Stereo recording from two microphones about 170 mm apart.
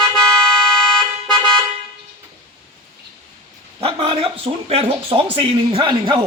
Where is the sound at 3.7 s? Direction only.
30° right (ahead or behind).